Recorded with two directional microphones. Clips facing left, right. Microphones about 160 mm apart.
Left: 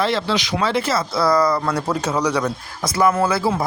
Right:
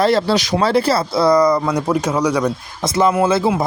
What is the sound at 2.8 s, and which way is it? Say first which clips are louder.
Speech: right 2 dB; 25° right (ahead or behind).